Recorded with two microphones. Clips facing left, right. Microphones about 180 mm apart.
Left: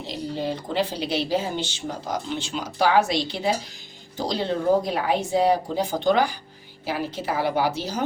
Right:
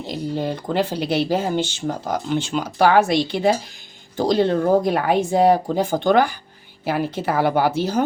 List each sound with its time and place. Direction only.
0.1 s speech: 50° right (ahead or behind)